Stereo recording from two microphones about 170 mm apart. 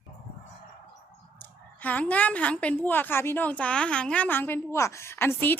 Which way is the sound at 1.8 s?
10° left (ahead or behind).